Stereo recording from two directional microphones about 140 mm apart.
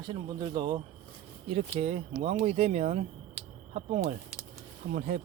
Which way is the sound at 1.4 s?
45° right (ahead or behind).